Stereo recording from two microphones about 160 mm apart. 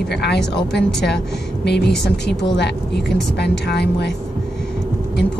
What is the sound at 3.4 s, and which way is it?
Speech, 90° left.